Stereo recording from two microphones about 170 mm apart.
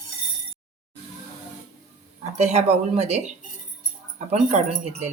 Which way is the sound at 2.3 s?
40° right (ahead or behind).